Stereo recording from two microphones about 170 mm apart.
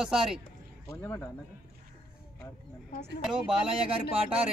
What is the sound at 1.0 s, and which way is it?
Speech, 15° left (ahead or behind).